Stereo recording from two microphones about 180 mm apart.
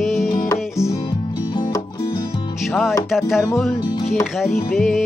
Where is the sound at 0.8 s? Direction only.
20° left (ahead or behind).